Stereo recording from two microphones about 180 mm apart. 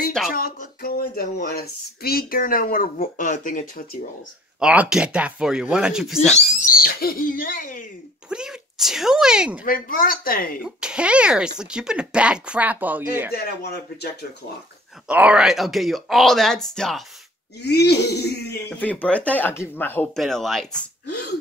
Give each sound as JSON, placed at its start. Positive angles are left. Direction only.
{"t": 0.3, "sound": "speech", "side_deg": 55}
{"t": 4.6, "sound": "speech", "side_deg": -5}
{"t": 6.3, "sound": "speech", "side_deg": 50}
{"t": 8.3, "sound": "speech", "side_deg": -5}
{"t": 9.7, "sound": "speech", "side_deg": 50}
{"t": 10.6, "sound": "speech", "side_deg": -5}
{"t": 13.3, "sound": "throat clearing", "side_deg": 60}
{"t": 15.0, "sound": "speech", "side_deg": -5}
{"t": 17.6, "sound": "throat clearing", "side_deg": 65}
{"t": 18.7, "sound": "speech", "side_deg": 10}